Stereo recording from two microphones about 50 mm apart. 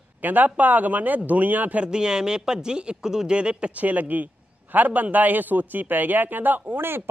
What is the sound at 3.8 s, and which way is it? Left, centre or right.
A man's voice, right.